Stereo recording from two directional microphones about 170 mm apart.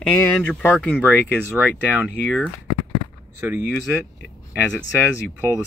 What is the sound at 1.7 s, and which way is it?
Speech, 10° left (ahead or behind).